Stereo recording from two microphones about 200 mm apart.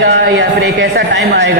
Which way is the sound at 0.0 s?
55° right (ahead or behind).